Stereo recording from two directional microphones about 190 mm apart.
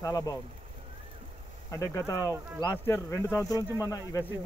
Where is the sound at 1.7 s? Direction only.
15° left (ahead or behind).